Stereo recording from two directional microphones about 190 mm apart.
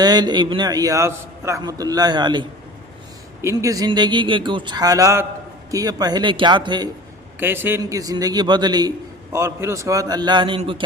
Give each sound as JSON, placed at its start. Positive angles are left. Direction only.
{"t": 0.0, "sound": "a man's voice", "side_deg": -20}
{"t": 7.3, "sound": "a man's voice", "side_deg": -10}